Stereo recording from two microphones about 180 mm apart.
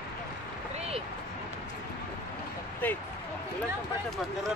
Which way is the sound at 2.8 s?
10° left (ahead or behind).